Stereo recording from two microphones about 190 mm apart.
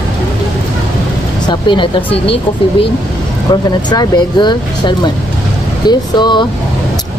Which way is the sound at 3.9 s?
25° left (ahead or behind).